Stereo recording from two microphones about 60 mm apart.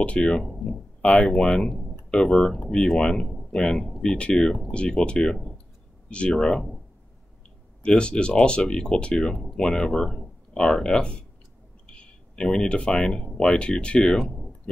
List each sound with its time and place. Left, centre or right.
0.0 s speech: left
3.7 s speech: centre
4.0 s speech: centre
6.4 s speech: centre
7.8 s speech: centre
11.8 s a sound: centre
12.6 s speech: centre